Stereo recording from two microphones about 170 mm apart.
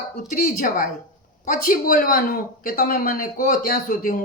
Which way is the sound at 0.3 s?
55° left (ahead or behind).